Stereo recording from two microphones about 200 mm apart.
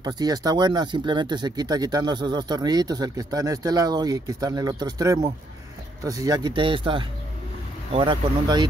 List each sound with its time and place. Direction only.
0.0 s speech: 20° right (ahead or behind)